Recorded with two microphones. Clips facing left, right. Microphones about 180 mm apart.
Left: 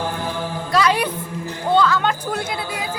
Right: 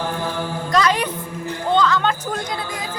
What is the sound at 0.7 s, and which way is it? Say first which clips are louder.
Music: left 1 dB; 10° left (ahead or behind).